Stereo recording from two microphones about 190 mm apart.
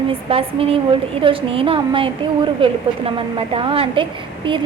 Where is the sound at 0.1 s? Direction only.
30° right (ahead or behind).